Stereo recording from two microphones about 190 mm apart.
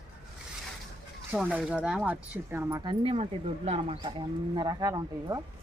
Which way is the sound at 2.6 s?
25° right (ahead or behind).